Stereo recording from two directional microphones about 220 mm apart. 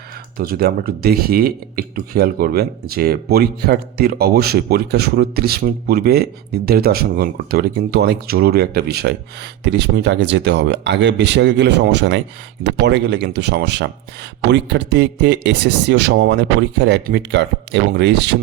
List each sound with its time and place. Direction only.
0.3 s speech: 45° right (ahead or behind)